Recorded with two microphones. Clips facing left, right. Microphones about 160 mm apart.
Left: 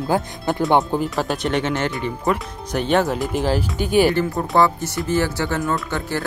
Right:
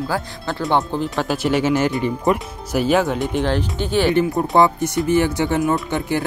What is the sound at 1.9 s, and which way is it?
Speech, 20° right (ahead or behind).